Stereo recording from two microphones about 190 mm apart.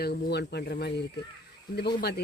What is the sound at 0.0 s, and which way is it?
Speech, 55° left (ahead or behind).